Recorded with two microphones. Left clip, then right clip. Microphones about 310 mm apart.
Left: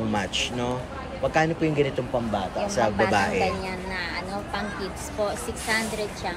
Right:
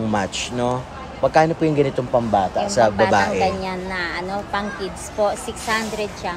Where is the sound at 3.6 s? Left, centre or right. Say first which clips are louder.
Right 6 dB; right.